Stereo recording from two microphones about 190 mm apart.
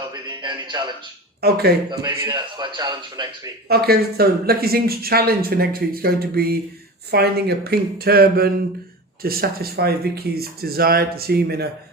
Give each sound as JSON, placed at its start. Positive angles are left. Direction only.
{"t": 0.1, "sound": "a man's voice", "side_deg": -25}
{"t": 1.4, "sound": "speech", "side_deg": -55}
{"t": 1.9, "sound": "a man's voice", "side_deg": -20}
{"t": 3.7, "sound": "speech", "side_deg": -55}